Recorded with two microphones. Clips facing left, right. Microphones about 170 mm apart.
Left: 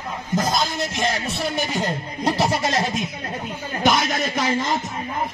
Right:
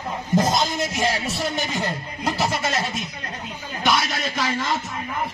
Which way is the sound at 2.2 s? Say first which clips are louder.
Left 3 dB; 35° left (ahead or behind).